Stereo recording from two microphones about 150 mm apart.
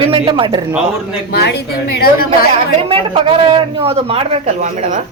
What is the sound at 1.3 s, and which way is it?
A woman's voice, 90° left.